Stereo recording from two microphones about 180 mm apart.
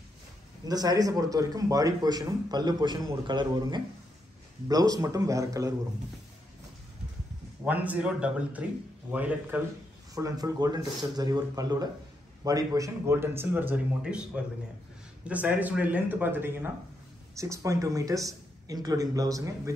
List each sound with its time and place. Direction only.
0.7 s speech: 20° right (ahead or behind)
7.6 s speech: 10° right (ahead or behind)
10.1 s speech: 20° right (ahead or behind)